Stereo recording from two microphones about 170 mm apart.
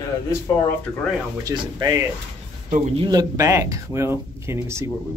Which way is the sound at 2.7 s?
40° right (ahead or behind).